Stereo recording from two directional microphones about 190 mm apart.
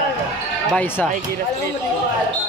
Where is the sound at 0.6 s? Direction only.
5° left (ahead or behind).